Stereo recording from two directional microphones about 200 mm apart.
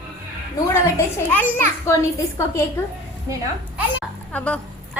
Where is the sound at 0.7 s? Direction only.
10° left (ahead or behind).